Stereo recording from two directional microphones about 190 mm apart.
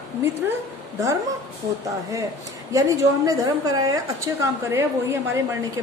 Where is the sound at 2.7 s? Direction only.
15° right (ahead or behind).